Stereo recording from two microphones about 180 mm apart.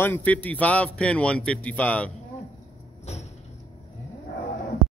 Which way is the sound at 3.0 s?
35° left (ahead or behind).